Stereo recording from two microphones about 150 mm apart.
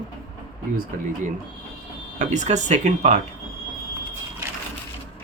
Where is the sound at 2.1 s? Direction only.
55° right (ahead or behind).